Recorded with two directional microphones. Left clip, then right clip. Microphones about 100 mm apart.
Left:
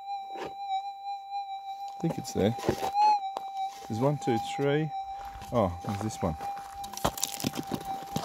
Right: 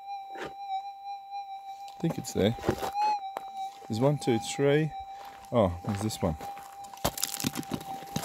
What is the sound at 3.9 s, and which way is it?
Speech, 20° right (ahead or behind).